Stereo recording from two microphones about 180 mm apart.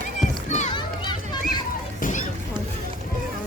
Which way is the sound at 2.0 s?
45° left (ahead or behind).